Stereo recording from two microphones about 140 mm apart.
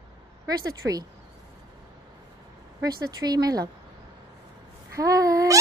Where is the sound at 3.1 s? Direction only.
30° right (ahead or behind).